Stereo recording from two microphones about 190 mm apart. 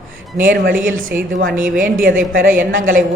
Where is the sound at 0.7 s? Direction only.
45° right (ahead or behind).